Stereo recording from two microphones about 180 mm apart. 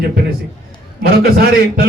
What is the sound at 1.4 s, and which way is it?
Speech, 55° right (ahead or behind).